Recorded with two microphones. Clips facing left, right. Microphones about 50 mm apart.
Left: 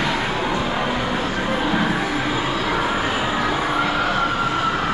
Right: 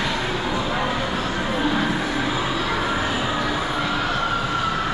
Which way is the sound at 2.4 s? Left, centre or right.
Centre.